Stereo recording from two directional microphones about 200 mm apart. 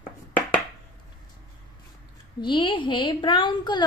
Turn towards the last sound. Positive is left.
turn(degrees=25)  # may be behind; listen again after turning